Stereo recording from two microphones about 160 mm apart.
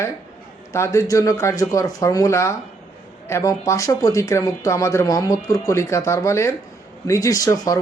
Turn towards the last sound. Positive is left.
turn(degrees=20)  # may be behind; listen again after turning